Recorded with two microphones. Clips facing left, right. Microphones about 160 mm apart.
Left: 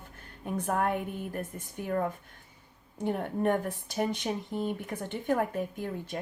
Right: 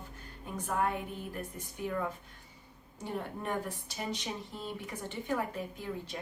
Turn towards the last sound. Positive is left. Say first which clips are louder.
# left 4 dB
turn(degrees=50)  # may be behind; listen again after turning